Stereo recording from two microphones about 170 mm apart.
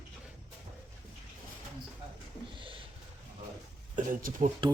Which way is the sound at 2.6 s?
30° right (ahead or behind).